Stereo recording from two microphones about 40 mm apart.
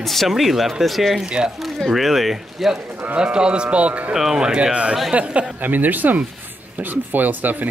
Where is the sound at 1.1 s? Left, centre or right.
Right.